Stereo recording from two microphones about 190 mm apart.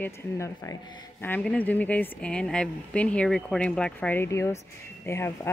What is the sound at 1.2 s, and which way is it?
Speech, 10° left (ahead or behind).